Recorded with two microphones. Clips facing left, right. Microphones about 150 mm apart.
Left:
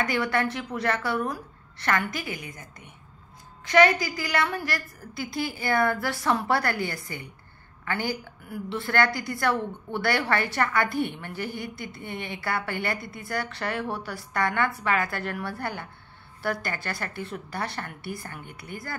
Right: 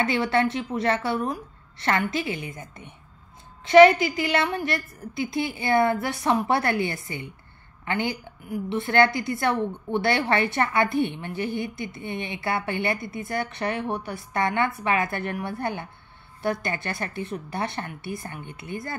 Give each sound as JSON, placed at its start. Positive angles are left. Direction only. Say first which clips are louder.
{"t": 0.0, "sound": "a woman's voice", "louder": "right 3 dB", "side_deg": -25}